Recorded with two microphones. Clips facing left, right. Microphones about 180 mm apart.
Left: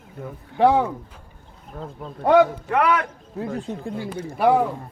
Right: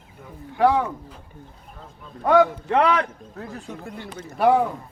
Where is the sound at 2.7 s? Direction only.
25° right (ahead or behind).